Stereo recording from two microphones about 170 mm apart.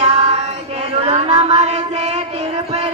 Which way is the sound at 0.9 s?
40° right (ahead or behind).